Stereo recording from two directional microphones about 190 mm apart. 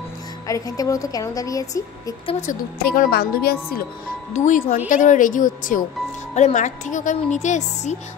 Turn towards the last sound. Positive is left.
turn(degrees=40)  # may be behind; listen again after turning